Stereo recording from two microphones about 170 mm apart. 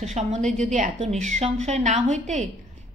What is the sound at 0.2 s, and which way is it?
A woman's voice, 40° right (ahead or behind).